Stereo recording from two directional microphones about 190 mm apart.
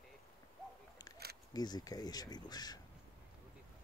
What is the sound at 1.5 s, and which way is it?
Speech, 20° left (ahead or behind).